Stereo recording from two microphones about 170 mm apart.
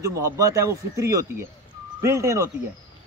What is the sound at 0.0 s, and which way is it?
Speech, 20° right (ahead or behind).